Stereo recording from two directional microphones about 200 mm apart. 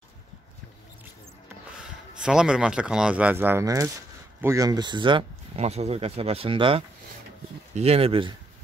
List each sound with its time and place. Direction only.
1.8 s speech: 5° right (ahead or behind); by 8.4 s 25° right (ahead or behind)